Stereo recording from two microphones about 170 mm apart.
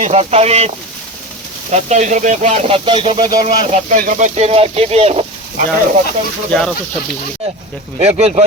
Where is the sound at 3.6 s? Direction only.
45° right (ahead or behind).